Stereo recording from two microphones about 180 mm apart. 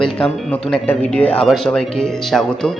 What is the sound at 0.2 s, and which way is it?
Speech, 5° left (ahead or behind).